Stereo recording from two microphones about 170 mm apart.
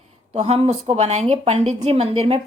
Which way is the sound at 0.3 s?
40° right (ahead or behind).